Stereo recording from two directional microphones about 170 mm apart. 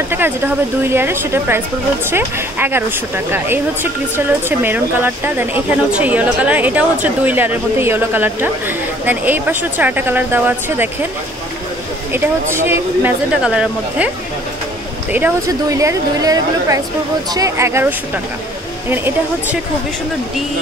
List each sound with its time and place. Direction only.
0.1 s speech: 10° right (ahead or behind)
12.6 s speech: 10° right (ahead or behind)